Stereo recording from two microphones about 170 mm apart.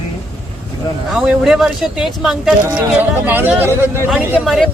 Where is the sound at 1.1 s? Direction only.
5° right (ahead or behind).